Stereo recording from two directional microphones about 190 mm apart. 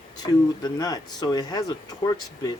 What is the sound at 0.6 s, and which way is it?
Speech, 20° left (ahead or behind).